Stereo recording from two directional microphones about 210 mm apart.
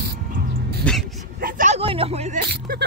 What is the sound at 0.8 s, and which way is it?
Dog, 5° left (ahead or behind).